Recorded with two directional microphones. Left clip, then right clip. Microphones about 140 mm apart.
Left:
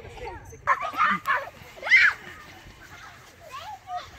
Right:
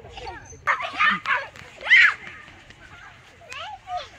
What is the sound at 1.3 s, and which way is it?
Horse, 5° left (ahead or behind).